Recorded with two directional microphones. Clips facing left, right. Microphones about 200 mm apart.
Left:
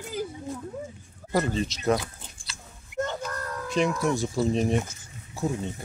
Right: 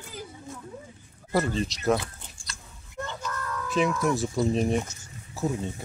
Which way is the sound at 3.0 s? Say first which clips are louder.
Left 5 dB; 45° left (ahead or behind).